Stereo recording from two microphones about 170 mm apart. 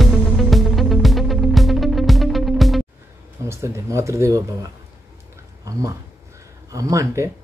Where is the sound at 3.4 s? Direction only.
15° right (ahead or behind).